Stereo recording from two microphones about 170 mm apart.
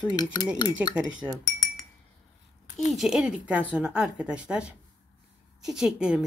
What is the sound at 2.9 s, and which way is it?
Speech, centre (ahead or behind).